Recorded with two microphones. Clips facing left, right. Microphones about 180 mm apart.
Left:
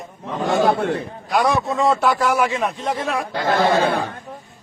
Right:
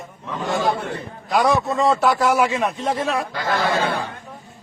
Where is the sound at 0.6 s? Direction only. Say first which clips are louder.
Left 4 dB; 60° left (ahead or behind).